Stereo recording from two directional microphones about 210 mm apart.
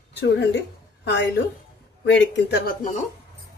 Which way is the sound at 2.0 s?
55° left (ahead or behind).